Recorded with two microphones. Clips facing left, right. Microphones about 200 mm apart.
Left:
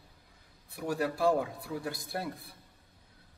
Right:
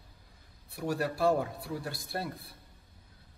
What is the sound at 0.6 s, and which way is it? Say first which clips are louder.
Speech: even; 15° left (ahead or behind).